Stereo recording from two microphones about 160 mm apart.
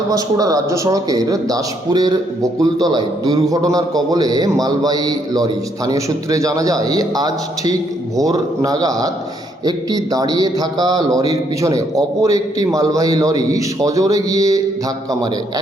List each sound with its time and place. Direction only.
0.1 s a man's voice: 20° right (ahead or behind)